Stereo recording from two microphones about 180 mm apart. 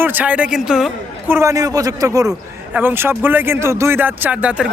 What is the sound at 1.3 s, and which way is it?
A man's voice, 15° right (ahead or behind).